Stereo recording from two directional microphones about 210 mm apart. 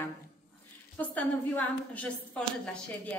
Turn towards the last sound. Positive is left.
turn(degrees=5)  # may be behind; listen again after turning